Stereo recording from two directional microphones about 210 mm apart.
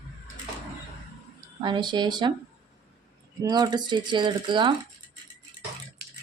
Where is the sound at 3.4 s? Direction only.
20° right (ahead or behind).